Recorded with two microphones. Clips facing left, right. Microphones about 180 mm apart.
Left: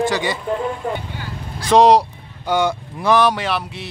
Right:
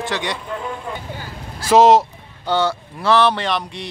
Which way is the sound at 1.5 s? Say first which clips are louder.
Even; 5° right (ahead or behind).